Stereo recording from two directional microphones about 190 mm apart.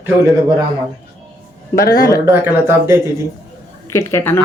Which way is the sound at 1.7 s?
20° left (ahead or behind).